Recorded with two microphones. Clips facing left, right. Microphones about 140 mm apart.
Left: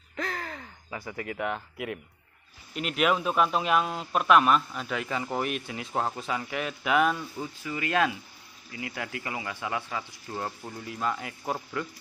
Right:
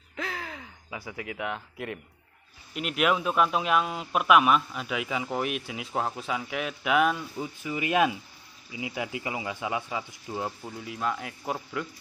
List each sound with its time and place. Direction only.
0.1 s gasp: centre (ahead or behind)
2.7 s a man's voice: centre (ahead or behind)
7.6 s speech: 20° right (ahead or behind)
10.6 s a man's voice: centre (ahead or behind)